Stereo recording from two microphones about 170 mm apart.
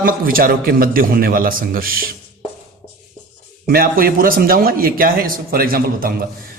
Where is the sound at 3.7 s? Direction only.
55° right (ahead or behind).